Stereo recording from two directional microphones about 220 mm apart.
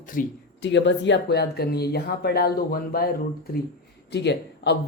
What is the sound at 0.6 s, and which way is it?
Speech, 55° left (ahead or behind).